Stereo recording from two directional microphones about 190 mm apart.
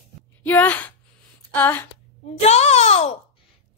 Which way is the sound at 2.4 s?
35° left (ahead or behind).